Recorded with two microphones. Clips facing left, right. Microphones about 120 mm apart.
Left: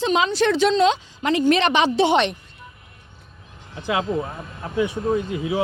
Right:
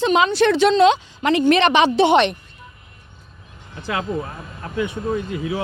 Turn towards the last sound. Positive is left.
turn(degrees=25)  # may be behind; listen again after turning